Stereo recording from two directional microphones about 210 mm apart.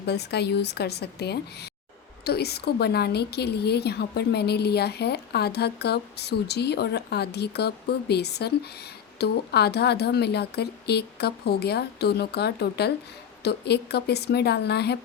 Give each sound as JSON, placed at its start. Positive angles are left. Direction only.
{"t": 0.0, "sound": "a woman's voice", "side_deg": 50}